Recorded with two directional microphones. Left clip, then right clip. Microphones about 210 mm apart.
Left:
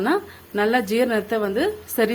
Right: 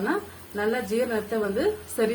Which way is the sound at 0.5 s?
45° left (ahead or behind).